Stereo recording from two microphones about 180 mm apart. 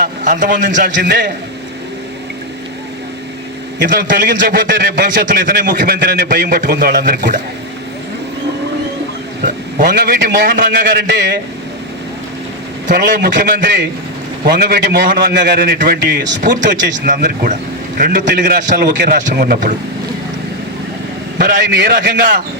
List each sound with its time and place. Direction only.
0.0 s a man's voice: 50° right (ahead or behind)
1.0 s speech: 70° right (ahead or behind)
3.8 s a man's voice: 55° right (ahead or behind)
9.4 s a man's voice: 50° right (ahead or behind); by 11.2 s 70° right (ahead or behind)
12.9 s a man's voice: 65° right (ahead or behind)
16.9 s a man's voice: 55° right (ahead or behind)
21.3 s a man's voice: 55° right (ahead or behind)